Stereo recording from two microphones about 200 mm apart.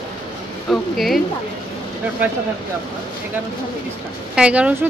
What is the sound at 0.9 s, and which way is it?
Speech, centre (ahead or behind).